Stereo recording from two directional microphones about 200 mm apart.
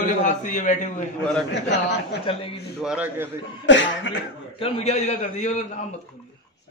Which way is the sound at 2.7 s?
5° right (ahead or behind).